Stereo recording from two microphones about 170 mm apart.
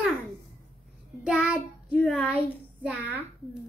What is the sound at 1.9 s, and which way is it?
Child singing, 5° left (ahead or behind).